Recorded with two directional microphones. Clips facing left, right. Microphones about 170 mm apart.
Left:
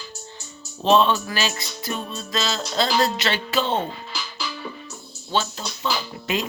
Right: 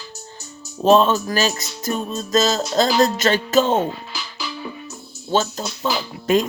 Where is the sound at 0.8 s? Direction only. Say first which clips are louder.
Right 4 dB; 40° right (ahead or behind).